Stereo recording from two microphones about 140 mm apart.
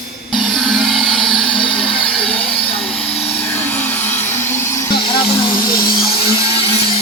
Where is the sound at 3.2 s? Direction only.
10° left (ahead or behind).